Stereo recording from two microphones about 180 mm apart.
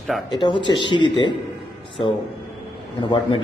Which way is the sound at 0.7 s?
25° left (ahead or behind).